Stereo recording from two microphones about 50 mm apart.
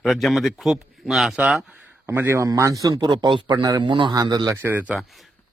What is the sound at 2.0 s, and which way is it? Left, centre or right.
Speech, right.